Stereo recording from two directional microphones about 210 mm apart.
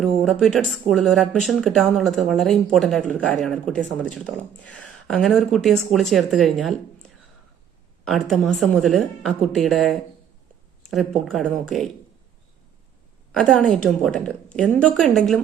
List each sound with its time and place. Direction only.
0.0 s speech: centre (ahead or behind)
11.3 s speech: centre (ahead or behind)
13.3 s speech: 5° left (ahead or behind)